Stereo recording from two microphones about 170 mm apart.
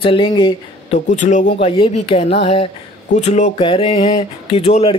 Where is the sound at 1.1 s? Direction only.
45° left (ahead or behind).